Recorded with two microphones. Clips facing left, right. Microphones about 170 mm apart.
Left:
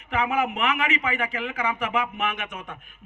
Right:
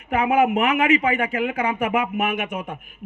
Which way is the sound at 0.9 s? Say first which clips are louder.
Right 7 dB; 30° right (ahead or behind).